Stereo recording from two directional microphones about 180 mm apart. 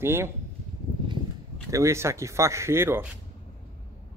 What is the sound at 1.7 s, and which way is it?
A man's voice, 15° right (ahead or behind).